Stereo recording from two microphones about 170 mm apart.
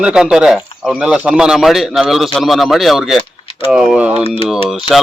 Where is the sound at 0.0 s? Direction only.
5° right (ahead or behind).